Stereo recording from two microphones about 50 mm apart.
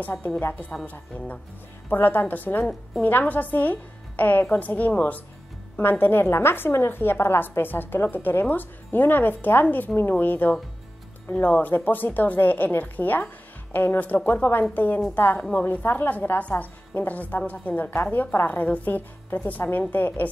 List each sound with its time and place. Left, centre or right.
0.0 s a woman's voice: left